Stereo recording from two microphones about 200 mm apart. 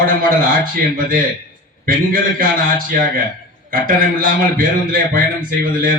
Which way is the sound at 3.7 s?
45° right (ahead or behind).